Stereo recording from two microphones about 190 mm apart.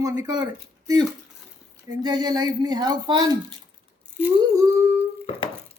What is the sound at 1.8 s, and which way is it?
Speech, 20° right (ahead or behind).